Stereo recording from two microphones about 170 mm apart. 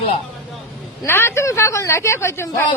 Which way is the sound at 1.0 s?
15° left (ahead or behind).